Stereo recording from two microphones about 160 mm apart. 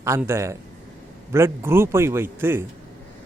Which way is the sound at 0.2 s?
15° right (ahead or behind).